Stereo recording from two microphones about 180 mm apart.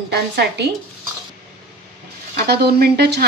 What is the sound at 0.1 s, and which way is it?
Speech, 65° right (ahead or behind).